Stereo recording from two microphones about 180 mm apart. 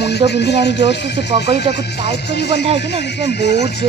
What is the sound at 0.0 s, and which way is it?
Speech, 70° left (ahead or behind).